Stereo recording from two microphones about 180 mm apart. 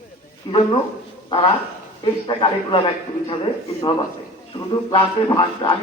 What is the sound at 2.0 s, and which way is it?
Speech, 30° left (ahead or behind).